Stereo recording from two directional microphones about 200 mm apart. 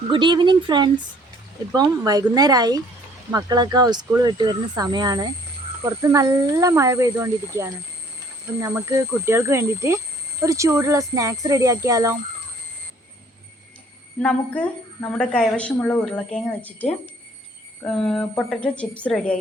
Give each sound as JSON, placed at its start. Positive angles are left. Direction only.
{"t": 0.1, "sound": "speech", "side_deg": -25}
{"t": 14.2, "sound": "a woman's voice", "side_deg": 5}